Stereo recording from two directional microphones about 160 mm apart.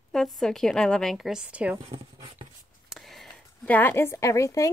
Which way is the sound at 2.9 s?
Centre (ahead or behind).